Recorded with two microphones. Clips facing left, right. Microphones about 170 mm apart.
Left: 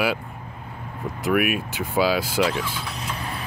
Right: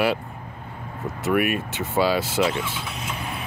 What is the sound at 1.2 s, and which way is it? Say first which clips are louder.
Speech: even; centre (ahead or behind).